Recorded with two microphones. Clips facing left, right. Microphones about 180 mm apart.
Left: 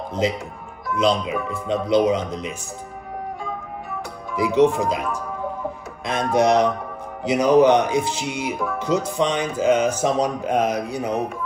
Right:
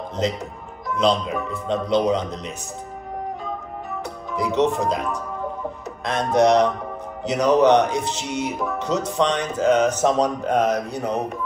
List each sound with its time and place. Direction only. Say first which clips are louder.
0.9 s speech: even; 5° left (ahead or behind)
4.4 s speech: left 3 dB; 5° left (ahead or behind)
6.3 s speech: right 1 dB; 5° left (ahead or behind)